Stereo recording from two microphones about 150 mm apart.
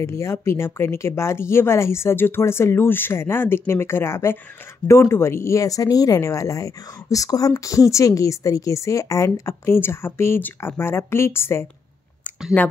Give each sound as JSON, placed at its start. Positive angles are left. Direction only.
{"t": 0.0, "sound": "speech", "side_deg": 20}